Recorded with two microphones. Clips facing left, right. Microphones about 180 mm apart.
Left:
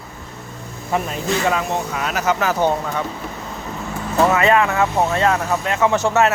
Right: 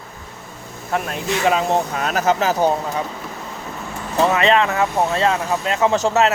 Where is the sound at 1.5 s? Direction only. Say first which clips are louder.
Right 6 dB; 20° right (ahead or behind).